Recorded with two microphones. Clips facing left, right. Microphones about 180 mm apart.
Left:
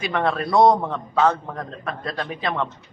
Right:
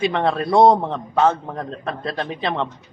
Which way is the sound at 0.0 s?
25° right (ahead or behind).